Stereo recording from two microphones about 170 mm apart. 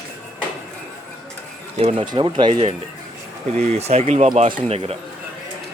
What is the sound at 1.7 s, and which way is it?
Speech, 35° right (ahead or behind).